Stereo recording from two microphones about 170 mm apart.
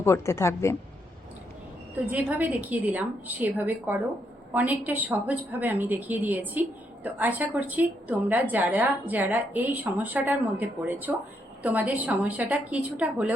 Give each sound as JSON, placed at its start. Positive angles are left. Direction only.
{"t": 0.0, "sound": "a woman's voice", "side_deg": 15}
{"t": 2.0, "sound": "a woman's voice", "side_deg": -10}